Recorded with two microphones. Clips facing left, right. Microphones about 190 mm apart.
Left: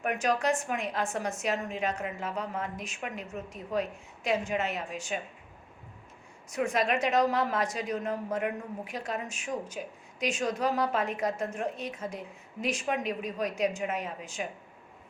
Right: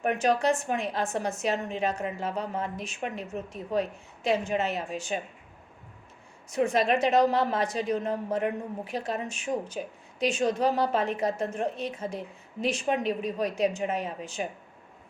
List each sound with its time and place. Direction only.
0.0 s a woman's voice: 30° right (ahead or behind)
6.5 s a woman's voice: 30° right (ahead or behind)